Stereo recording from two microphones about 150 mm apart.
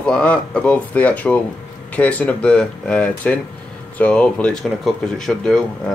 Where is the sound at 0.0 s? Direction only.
5° left (ahead or behind).